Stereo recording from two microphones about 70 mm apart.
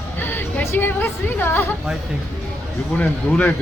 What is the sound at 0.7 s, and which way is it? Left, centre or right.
Speech, left.